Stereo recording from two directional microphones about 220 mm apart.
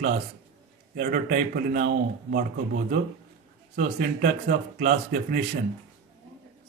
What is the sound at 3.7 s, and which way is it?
Speech, 40° right (ahead or behind).